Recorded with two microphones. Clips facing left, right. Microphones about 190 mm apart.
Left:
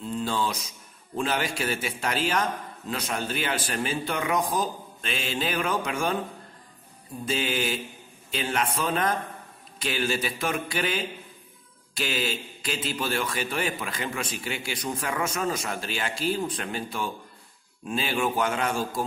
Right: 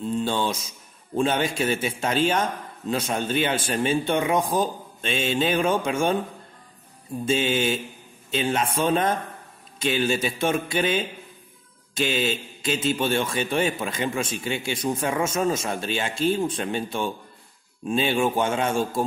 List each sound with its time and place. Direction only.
0.2 s a man's voice: 25° right (ahead or behind)
7.2 s a man's voice: 25° right (ahead or behind)